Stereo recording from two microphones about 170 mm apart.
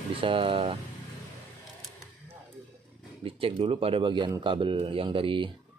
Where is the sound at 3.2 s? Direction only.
30° right (ahead or behind).